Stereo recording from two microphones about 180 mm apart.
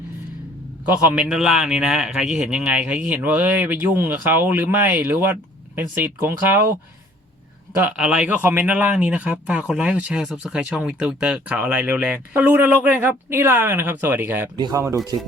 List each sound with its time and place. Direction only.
0.9 s speech: 5° right (ahead or behind)
7.9 s speech: 5° right (ahead or behind)